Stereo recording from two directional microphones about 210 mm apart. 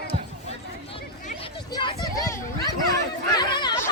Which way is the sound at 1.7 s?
15° left (ahead or behind).